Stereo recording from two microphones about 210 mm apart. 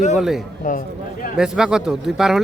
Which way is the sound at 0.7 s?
40° left (ahead or behind).